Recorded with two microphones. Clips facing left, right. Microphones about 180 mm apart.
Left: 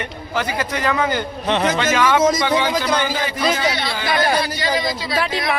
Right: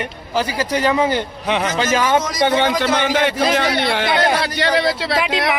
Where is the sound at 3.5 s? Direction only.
65° right (ahead or behind).